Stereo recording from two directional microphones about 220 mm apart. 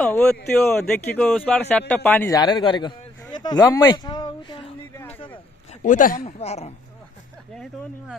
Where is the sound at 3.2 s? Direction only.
20° left (ahead or behind).